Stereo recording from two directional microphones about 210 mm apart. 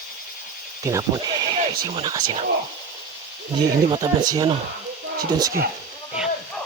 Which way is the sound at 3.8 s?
20° right (ahead or behind).